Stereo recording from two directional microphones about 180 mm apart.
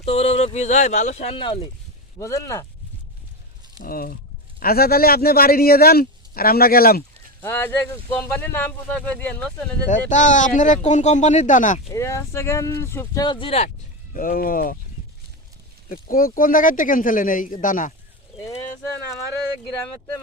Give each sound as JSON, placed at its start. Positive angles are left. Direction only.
{"t": 0.0, "sound": "speech", "side_deg": 35}
{"t": 2.1, "sound": "speech", "side_deg": 15}
{"t": 3.8, "sound": "a man's voice", "side_deg": 55}
{"t": 7.4, "sound": "speech", "side_deg": 10}
{"t": 9.9, "sound": "speech", "side_deg": 45}
{"t": 11.9, "sound": "speech", "side_deg": 15}
{"t": 14.1, "sound": "speech", "side_deg": 50}
{"t": 15.9, "sound": "speech", "side_deg": 50}